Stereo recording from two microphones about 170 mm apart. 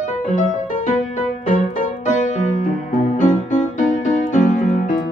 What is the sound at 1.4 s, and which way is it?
Music, 50° left (ahead or behind).